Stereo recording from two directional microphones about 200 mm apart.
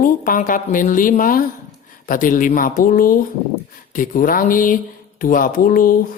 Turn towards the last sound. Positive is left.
turn(degrees=45)  # may be behind; listen again after turning